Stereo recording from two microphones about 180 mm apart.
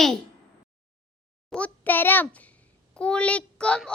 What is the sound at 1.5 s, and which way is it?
A child's voice, 10° left (ahead or behind).